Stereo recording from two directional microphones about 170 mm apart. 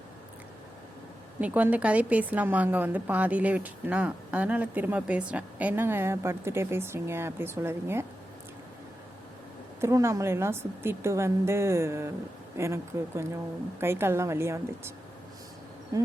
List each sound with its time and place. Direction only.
1.4 s a woman's voice: 10° right (ahead or behind)
9.8 s a woman's voice: 15° right (ahead or behind)
15.9 s a sound: 20° right (ahead or behind)